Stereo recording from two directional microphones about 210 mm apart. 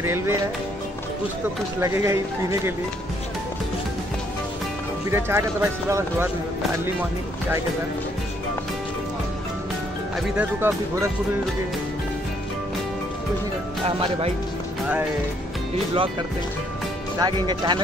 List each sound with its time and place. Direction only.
0.0 s speech: 10° right (ahead or behind)
1.8 s speech: 15° right (ahead or behind)
5.1 s speech: 10° right (ahead or behind)
10.3 s speech: 10° right (ahead or behind)
13.8 s speech: 25° right (ahead or behind)
15.9 s speech: 25° right (ahead or behind)